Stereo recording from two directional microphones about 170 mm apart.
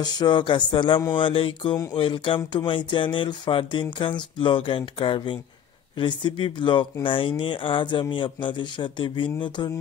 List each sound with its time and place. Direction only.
0.0 s speech: 25° left (ahead or behind)